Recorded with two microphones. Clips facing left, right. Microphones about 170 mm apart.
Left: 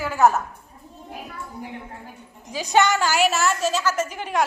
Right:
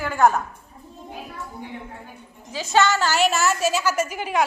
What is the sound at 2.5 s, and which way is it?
A woman's voice, 15° left (ahead or behind).